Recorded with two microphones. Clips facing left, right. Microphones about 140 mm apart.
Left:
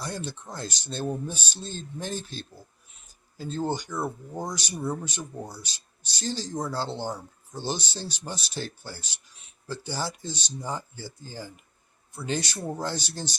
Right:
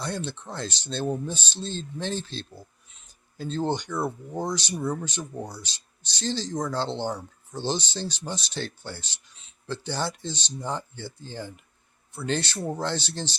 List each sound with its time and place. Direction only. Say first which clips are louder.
0.0 s speech: right 3 dB; 10° left (ahead or behind)
3.9 s speech: right 2 dB; 10° right (ahead or behind)
4.4 s speech: right 5 dB; 10° left (ahead or behind)